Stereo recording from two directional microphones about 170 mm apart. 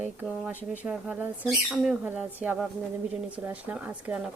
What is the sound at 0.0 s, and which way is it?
A woman's voice, 10° right (ahead or behind).